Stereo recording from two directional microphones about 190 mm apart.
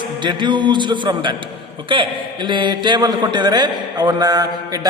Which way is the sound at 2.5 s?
25° right (ahead or behind).